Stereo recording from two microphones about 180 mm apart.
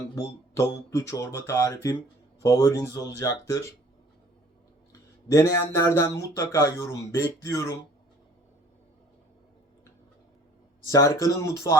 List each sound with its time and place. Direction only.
0.5 s speech: 15° left (ahead or behind)
4.9 s speech: 15° left (ahead or behind)
10.8 s speech: 15° left (ahead or behind)